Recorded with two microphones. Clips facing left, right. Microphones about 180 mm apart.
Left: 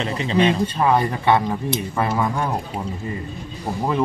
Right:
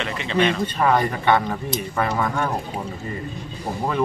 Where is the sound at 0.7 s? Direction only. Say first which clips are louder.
Left 1 dB; 5° left (ahead or behind).